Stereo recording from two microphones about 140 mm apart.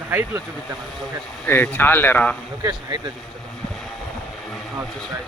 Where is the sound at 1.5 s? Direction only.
15° left (ahead or behind).